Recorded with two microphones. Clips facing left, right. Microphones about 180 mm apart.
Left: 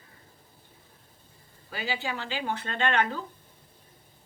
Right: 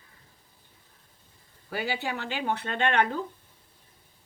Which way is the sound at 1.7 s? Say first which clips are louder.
Right 2 dB; 60° right (ahead or behind).